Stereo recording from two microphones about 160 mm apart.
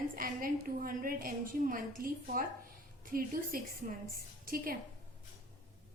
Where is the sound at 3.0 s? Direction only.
65° right (ahead or behind).